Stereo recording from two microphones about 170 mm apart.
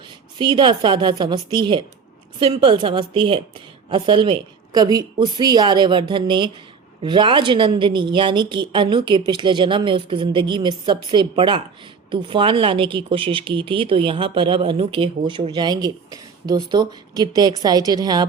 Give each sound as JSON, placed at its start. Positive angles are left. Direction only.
{"t": 0.3, "sound": "a woman's voice", "side_deg": -30}